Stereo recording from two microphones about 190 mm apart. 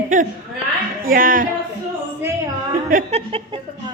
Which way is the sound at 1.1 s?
45° right (ahead or behind).